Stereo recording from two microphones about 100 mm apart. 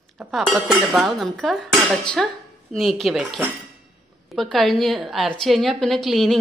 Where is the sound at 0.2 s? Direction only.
5° right (ahead or behind).